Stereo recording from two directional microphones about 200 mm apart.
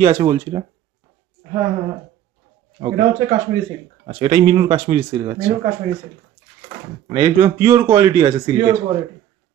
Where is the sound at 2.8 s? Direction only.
30° right (ahead or behind).